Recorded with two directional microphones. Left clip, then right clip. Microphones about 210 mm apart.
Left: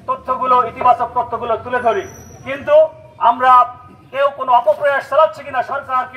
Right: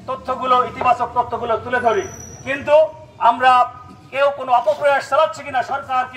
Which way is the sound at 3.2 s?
10° left (ahead or behind).